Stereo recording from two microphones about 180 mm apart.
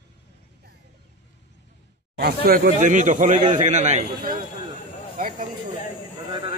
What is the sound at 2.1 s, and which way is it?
A man's voice, 60° right (ahead or behind).